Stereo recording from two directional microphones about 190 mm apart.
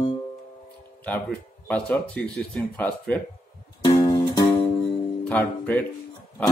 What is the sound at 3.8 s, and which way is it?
Music, 20° left (ahead or behind).